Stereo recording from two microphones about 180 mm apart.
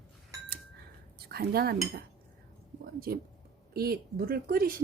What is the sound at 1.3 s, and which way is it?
Speech, 60° right (ahead or behind).